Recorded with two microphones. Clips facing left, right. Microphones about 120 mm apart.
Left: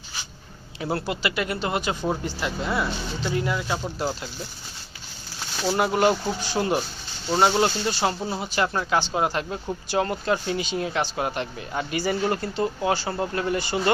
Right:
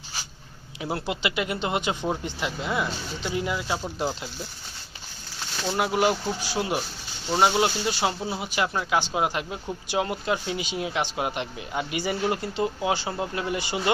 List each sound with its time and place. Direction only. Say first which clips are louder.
0.8 s speech: left 2 dB; 15° right (ahead or behind)
5.6 s speech: left 3 dB; centre (ahead or behind)